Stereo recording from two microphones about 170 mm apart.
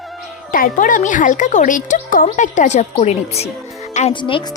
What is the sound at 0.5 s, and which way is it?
Speech, 55° left (ahead or behind).